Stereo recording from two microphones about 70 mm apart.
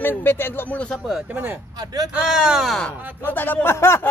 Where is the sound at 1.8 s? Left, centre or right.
Right.